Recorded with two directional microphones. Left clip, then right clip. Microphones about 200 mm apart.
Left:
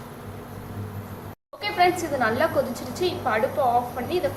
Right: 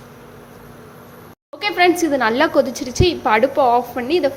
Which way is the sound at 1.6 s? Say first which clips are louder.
Right 6 dB; 45° right (ahead or behind).